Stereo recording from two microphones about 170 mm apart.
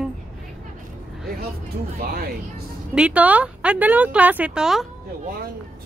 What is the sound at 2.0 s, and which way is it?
Speech, 65° right (ahead or behind).